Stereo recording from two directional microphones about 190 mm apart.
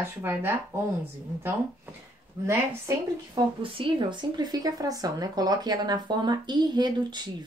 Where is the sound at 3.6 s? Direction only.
25° right (ahead or behind).